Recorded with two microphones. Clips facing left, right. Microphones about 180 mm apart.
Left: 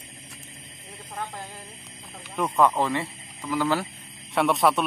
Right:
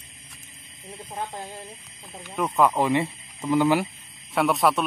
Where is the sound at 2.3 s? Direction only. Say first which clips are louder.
Even; centre (ahead or behind).